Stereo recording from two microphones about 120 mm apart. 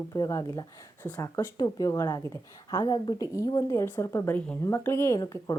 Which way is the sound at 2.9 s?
45° left (ahead or behind).